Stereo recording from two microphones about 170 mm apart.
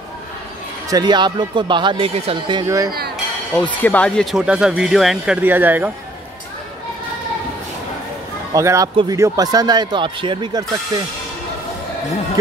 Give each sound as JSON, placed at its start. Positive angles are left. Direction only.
{"t": 0.8, "sound": "speech", "side_deg": -25}
{"t": 2.6, "sound": "speech", "side_deg": -20}
{"t": 3.8, "sound": "speech", "side_deg": 10}
{"t": 8.5, "sound": "speech", "side_deg": -20}